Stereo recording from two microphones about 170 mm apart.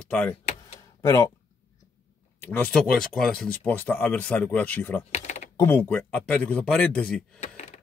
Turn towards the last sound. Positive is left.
turn(degrees=5)  # may be behind; listen again after turning